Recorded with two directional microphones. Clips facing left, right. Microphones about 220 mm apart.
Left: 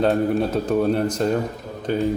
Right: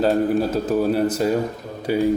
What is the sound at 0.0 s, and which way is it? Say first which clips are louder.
A man's voice: right 1 dB; centre (ahead or behind).